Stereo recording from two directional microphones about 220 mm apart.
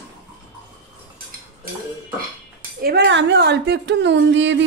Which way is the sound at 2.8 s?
50° right (ahead or behind).